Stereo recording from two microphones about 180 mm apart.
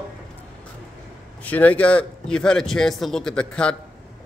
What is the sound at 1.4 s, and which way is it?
A man's voice, 10° left (ahead or behind).